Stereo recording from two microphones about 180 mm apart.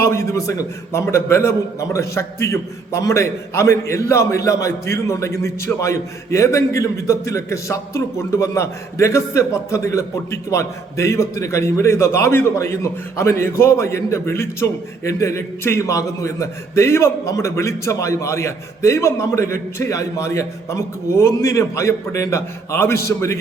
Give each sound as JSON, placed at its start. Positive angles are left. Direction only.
{"t": 0.0, "sound": "a man's voice", "side_deg": 15}